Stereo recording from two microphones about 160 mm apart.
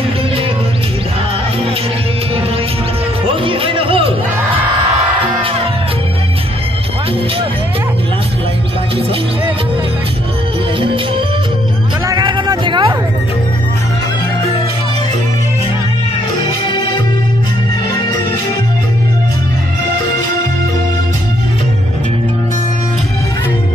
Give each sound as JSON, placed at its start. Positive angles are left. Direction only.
{"t": 3.3, "sound": "music", "side_deg": -35}
{"t": 10.8, "sound": "music", "side_deg": -35}
{"t": 12.1, "sound": "a sound", "side_deg": -25}